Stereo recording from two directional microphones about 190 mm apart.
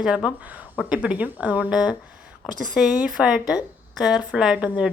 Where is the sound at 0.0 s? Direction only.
5° right (ahead or behind).